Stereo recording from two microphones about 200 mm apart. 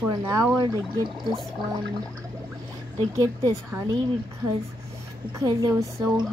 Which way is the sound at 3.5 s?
15° right (ahead or behind).